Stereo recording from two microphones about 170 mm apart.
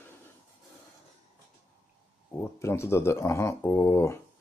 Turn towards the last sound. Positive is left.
turn(degrees=15)  # may be behind; listen again after turning